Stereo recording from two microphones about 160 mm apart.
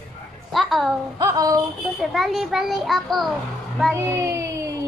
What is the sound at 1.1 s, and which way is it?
Speech, 20° right (ahead or behind).